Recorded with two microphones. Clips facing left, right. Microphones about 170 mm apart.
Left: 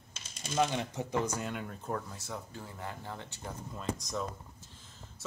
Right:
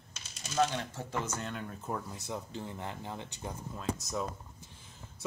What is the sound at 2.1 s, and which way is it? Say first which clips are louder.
Speech: right 3 dB; 20° right (ahead or behind).